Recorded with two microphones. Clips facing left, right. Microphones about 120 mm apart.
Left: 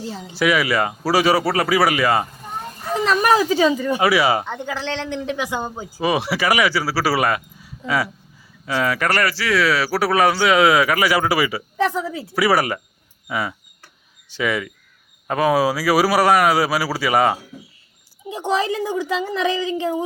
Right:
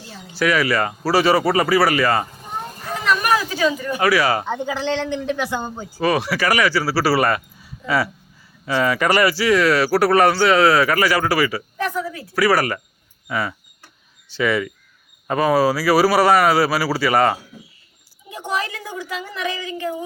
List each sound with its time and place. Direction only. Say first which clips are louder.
0.1 s speech: even; 15° left (ahead or behind)
2.9 s speech: left 3 dB; 30° left (ahead or behind)
4.4 s speech: right 4 dB; 10° right (ahead or behind)
5.4 s a woman's voice: even; 10° left (ahead or behind)
12.5 s speech: even; 10° left (ahead or behind)
18.3 s a woman's voice: left 5 dB; 30° left (ahead or behind)